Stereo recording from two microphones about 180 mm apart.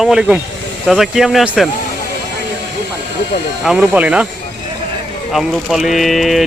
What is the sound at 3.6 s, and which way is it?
Speech, 5° right (ahead or behind).